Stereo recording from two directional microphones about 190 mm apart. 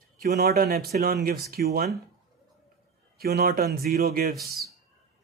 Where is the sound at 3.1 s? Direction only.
50° right (ahead or behind).